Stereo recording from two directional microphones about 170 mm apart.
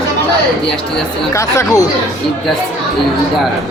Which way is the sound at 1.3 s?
20° left (ahead or behind).